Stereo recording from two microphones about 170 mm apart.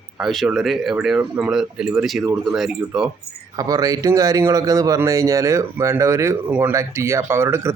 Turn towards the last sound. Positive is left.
turn(degrees=-15)  # may be behind; listen again after turning